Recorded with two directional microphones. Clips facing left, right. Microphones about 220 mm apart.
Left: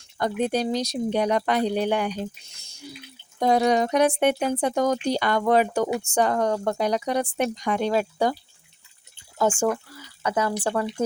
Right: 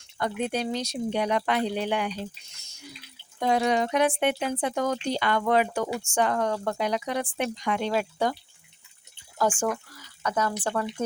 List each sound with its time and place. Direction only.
0.2 s speech: 40° left (ahead or behind)
2.6 s a sound: 30° left (ahead or behind)
3.4 s speech: 40° left (ahead or behind)
9.4 s speech: 25° left (ahead or behind)